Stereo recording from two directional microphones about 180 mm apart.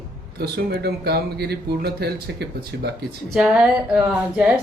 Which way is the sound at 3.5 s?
5° right (ahead or behind).